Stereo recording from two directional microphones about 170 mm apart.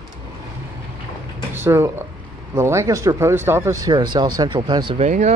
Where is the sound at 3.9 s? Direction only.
25° right (ahead or behind).